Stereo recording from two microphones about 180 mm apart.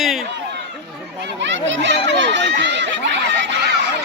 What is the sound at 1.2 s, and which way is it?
Chatter, 85° right.